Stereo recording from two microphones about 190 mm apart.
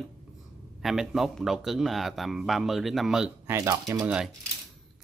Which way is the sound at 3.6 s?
20° right (ahead or behind).